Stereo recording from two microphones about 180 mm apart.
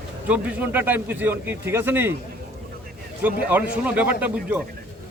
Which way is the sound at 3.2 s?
10° right (ahead or behind).